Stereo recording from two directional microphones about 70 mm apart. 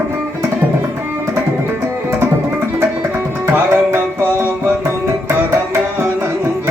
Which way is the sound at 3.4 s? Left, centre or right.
Right.